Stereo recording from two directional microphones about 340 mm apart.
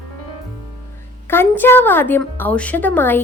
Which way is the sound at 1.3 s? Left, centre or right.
Centre.